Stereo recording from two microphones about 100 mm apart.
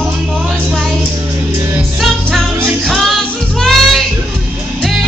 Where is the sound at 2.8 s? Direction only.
Centre (ahead or behind).